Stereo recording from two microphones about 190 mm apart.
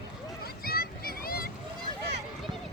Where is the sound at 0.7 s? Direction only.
50° left (ahead or behind).